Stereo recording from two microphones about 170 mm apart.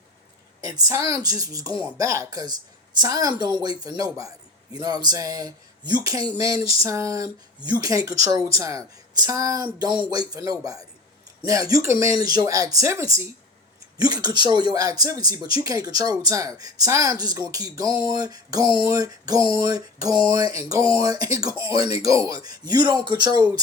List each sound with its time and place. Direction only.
0.6 s speech: 20° right (ahead or behind)